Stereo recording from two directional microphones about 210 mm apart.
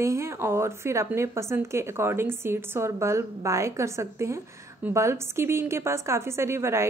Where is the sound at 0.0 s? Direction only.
15° right (ahead or behind).